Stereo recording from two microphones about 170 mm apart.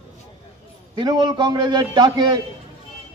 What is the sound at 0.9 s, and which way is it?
A man's voice, 25° right (ahead or behind).